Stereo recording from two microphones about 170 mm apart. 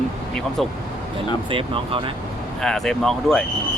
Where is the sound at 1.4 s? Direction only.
30° right (ahead or behind).